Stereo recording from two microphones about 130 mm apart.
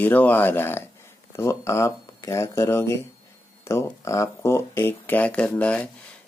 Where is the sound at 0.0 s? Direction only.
15° left (ahead or behind).